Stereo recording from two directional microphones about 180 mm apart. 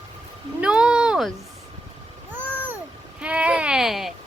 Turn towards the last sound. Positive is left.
turn(degrees=0)  # may be behind; listen again after turning